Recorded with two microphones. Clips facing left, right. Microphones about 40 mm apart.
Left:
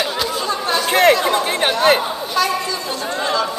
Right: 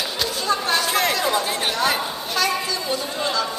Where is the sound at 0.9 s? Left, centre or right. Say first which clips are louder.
Left 8 dB; left.